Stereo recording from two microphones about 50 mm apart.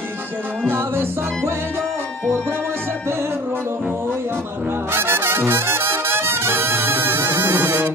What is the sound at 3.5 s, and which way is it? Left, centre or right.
Honk, right.